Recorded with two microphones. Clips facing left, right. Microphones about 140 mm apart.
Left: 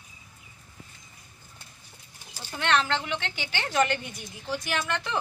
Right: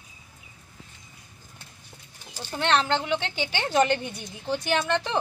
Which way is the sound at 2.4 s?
25° right (ahead or behind).